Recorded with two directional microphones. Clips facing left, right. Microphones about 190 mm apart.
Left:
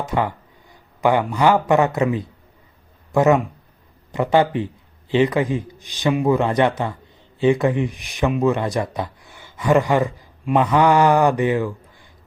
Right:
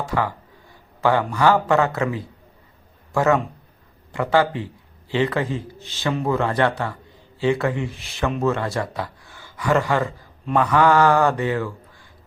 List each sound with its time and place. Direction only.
0.0 s a man's voice: 20° left (ahead or behind)